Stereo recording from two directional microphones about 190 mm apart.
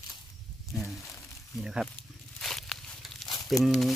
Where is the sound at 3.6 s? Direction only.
Centre (ahead or behind).